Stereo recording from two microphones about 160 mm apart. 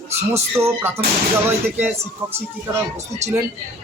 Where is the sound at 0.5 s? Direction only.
15° right (ahead or behind).